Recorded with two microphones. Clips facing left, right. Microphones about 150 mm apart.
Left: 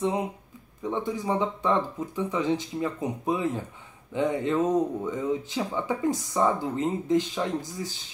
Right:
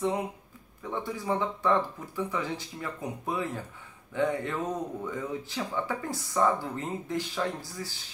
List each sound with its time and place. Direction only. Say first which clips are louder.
0.8 s speech: left 4 dB; 20° left (ahead or behind)